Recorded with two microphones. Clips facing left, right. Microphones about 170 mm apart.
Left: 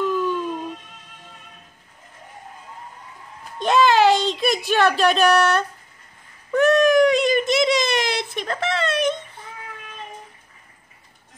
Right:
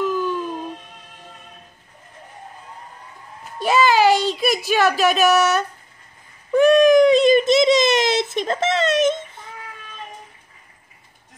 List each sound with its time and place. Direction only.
0.0 s music: centre (ahead or behind)
3.5 s speech: 5° right (ahead or behind)
6.5 s a sound: 15° right (ahead or behind)